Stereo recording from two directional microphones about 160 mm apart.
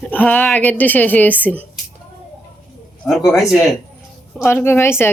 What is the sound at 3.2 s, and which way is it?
Speech, 20° left (ahead or behind).